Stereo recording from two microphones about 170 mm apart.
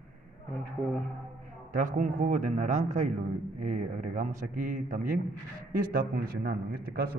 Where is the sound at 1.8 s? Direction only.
50° right (ahead or behind).